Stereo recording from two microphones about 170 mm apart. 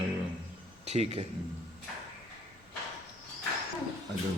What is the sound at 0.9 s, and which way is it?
Speech, 40° right (ahead or behind).